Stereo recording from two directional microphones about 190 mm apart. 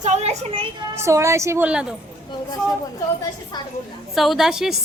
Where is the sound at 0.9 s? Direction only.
15° right (ahead or behind).